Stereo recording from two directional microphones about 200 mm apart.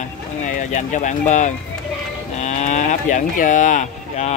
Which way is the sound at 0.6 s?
40° left (ahead or behind).